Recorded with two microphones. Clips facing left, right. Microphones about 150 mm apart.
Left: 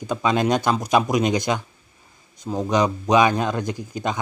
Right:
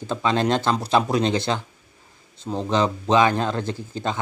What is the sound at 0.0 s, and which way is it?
A man's voice, 15° left (ahead or behind).